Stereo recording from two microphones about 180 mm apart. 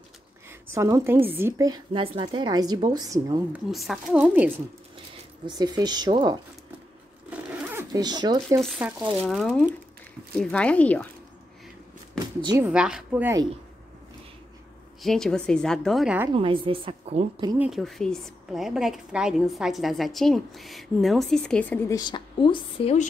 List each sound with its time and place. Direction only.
0.5 s a woman's voice: 15° right (ahead or behind)
1.9 s a woman's voice: 30° right (ahead or behind)
3.5 s a woman's voice: centre (ahead or behind)
5.6 s a woman's voice: 20° right (ahead or behind)
7.2 s zipper: 10° right (ahead or behind)
8.0 s a woman's voice: 25° right (ahead or behind)
9.2 s a woman's voice: 5° left (ahead or behind)
12.4 s a woman's voice: 25° right (ahead or behind)
12.6 s a woman's voice: 5° right (ahead or behind)
15.0 s a woman's voice: centre (ahead or behind)
16.3 s a woman's voice: 30° right (ahead or behind)
17.6 s a woman's voice: centre (ahead or behind)
21.9 s a woman's voice: 25° left (ahead or behind)